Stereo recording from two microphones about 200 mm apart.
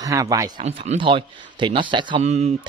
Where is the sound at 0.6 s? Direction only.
35° right (ahead or behind).